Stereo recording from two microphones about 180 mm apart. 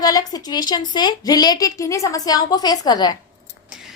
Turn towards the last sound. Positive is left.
turn(degrees=20)  # may be behind; listen again after turning